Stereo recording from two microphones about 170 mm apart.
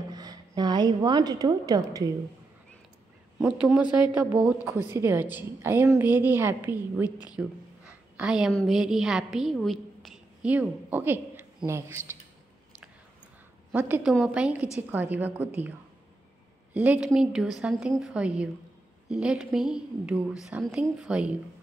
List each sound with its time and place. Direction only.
0.1 s a woman's voice: 25° right (ahead or behind)
3.3 s a woman's voice: 5° right (ahead or behind)
7.1 s speech: 25° left (ahead or behind)
8.2 s a woman's voice: 5° right (ahead or behind)
13.7 s a woman's voice: 10° right (ahead or behind)
16.7 s a woman's voice: 5° right (ahead or behind)